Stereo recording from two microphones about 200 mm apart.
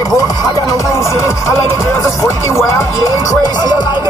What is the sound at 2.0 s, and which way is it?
Music, 15° left (ahead or behind).